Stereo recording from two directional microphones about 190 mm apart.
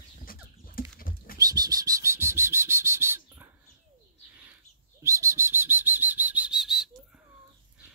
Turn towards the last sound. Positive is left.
turn(degrees=0)  # may be behind; listen again after turning